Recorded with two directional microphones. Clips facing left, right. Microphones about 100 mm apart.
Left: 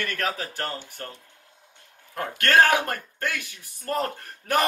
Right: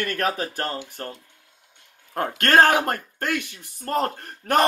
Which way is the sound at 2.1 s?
45° right (ahead or behind).